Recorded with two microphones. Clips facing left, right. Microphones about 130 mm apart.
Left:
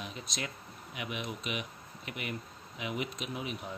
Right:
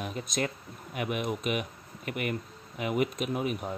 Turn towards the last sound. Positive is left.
turn(degrees=-50)  # may be behind; listen again after turning